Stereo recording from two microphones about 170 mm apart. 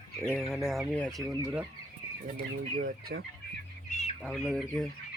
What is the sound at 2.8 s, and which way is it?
Chicken, 60° right (ahead or behind).